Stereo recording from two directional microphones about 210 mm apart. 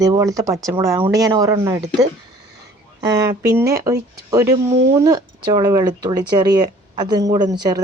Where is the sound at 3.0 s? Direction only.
15° right (ahead or behind).